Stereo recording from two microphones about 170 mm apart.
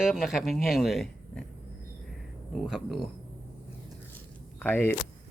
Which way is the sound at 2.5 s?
Centre (ahead or behind).